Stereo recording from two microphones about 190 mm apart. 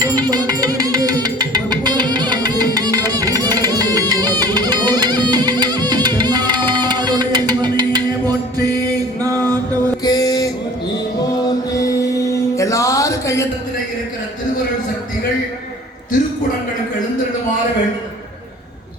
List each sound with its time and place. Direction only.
0.2 s music: 20° right (ahead or behind)
10.0 s a sound: 20° left (ahead or behind)
11.8 s mantra: 15° left (ahead or behind)